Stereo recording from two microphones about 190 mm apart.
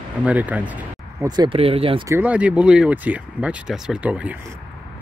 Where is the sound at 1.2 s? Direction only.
20° right (ahead or behind).